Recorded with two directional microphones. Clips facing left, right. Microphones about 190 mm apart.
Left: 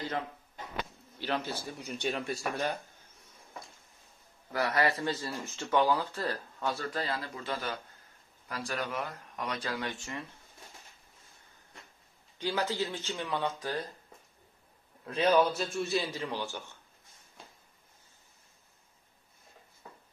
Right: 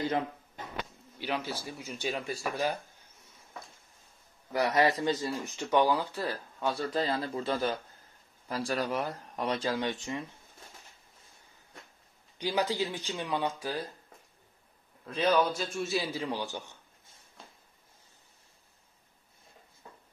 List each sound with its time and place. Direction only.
1.2 s a man's voice: 10° right (ahead or behind)
4.5 s speech: 20° right (ahead or behind)
6.9 s speech: 25° right (ahead or behind)
12.4 s speech: 15° right (ahead or behind)
15.0 s a man's voice: 10° left (ahead or behind); by 16.7 s 15° right (ahead or behind)